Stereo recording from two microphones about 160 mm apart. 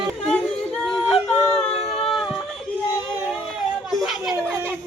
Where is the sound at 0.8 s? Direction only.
5° left (ahead or behind).